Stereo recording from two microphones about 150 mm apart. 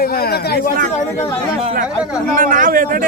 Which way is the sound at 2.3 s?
65° right (ahead or behind).